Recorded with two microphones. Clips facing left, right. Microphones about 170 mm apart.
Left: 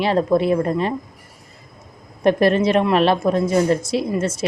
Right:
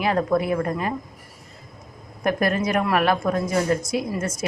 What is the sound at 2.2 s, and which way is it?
A woman's voice, 25° left (ahead or behind).